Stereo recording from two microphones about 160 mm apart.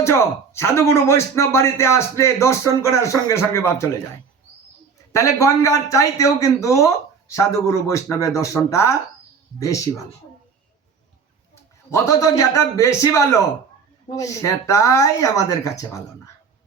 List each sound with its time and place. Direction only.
0.0 s speech: 15° left (ahead or behind)
5.1 s a man's voice: 20° left (ahead or behind)
11.9 s a man's voice: 20° left (ahead or behind)